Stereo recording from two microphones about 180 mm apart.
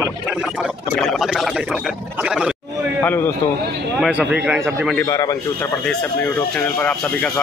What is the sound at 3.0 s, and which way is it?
Speech, 10° left (ahead or behind).